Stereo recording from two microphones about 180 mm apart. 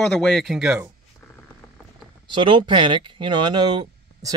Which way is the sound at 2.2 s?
25° right (ahead or behind).